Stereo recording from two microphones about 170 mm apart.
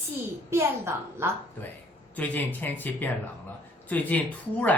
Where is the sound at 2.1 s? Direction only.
10° left (ahead or behind).